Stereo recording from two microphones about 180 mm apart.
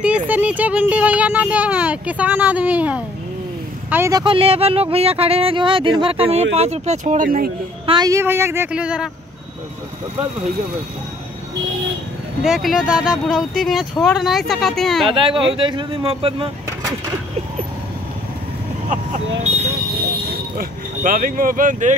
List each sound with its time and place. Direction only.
0.3 s speech: 10° right (ahead or behind)
4.2 s speech: 30° right (ahead or behind); by 7.5 s 55° right (ahead or behind)
7.8 s a sound: 30° right (ahead or behind)
8.1 s speech: 15° right (ahead or behind)
12.4 s speech: centre (ahead or behind)
15.5 s speech: 25° right (ahead or behind)
19.4 s vehicle: 35° right (ahead or behind)
20.2 s speech: 50° right (ahead or behind)